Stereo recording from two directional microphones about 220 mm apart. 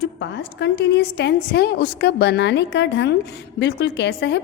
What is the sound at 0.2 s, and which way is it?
A woman's voice, 50° left (ahead or behind).